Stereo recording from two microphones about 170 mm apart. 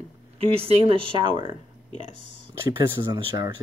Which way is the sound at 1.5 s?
45° left (ahead or behind).